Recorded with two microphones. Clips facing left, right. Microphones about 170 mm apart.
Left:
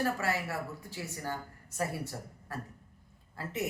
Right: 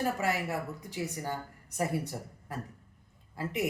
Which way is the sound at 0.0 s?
15° right (ahead or behind).